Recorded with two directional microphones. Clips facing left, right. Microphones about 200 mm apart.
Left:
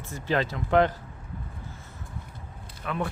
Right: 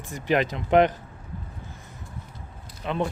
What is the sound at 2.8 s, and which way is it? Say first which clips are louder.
Speech: right 4 dB; 25° right (ahead or behind).